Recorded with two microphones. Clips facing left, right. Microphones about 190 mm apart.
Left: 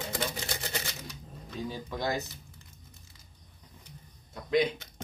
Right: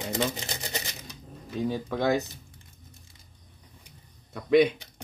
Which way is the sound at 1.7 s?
60° right (ahead or behind).